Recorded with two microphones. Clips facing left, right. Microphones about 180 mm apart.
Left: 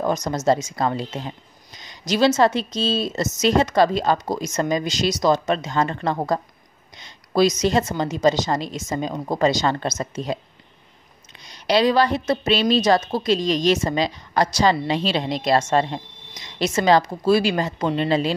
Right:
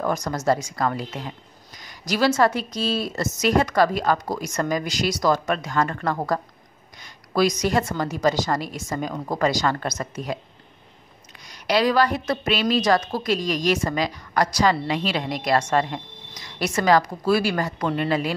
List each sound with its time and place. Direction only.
0.0 s a woman's voice: 20° left (ahead or behind)
11.4 s a woman's voice: 25° left (ahead or behind)